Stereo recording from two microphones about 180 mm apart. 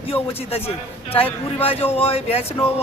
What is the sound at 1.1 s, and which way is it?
A man's voice, 30° left (ahead or behind).